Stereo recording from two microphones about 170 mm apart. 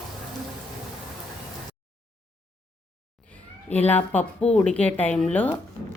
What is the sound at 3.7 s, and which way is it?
A woman's voice, 10° left (ahead or behind).